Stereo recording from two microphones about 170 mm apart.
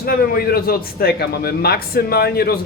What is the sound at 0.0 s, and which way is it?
A man's voice, 60° left (ahead or behind).